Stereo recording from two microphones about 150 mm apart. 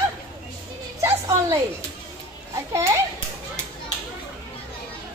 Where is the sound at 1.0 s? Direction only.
20° right (ahead or behind).